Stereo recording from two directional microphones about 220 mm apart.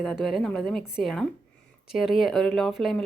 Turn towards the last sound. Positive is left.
turn(degrees=0)  # may be behind; listen again after turning